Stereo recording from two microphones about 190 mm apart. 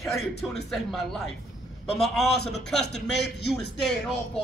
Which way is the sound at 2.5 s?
60° left (ahead or behind).